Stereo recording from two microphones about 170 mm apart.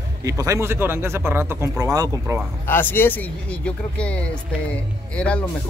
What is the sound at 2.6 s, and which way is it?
Speech, 10° left (ahead or behind).